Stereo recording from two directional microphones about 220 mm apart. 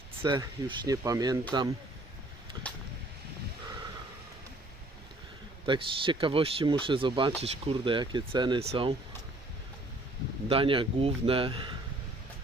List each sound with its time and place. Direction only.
0.2 s speech: 20° right (ahead or behind)
5.6 s speech: 20° right (ahead or behind)
10.5 s speech: 25° right (ahead or behind)